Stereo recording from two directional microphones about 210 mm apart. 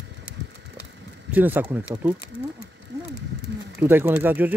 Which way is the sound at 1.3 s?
10° right (ahead or behind).